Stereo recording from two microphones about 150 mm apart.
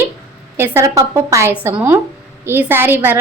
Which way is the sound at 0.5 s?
15° right (ahead or behind).